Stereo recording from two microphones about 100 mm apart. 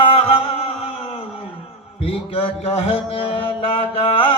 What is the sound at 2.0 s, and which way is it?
Mantra, 80° left.